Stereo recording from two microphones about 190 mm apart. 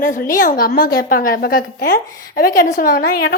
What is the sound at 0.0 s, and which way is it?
A woman's voice, 45° left (ahead or behind).